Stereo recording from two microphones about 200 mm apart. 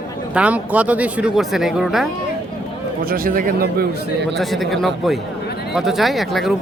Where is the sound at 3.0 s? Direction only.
45° right (ahead or behind).